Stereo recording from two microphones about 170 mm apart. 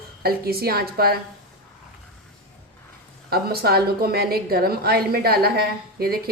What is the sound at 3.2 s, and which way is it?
A woman's voice, 65° right (ahead or behind).